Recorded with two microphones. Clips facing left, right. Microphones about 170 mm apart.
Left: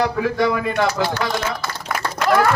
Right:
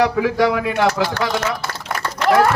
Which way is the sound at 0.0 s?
75° right (ahead or behind).